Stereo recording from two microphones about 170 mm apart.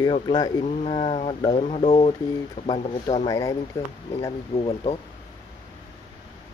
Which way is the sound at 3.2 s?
20° left (ahead or behind).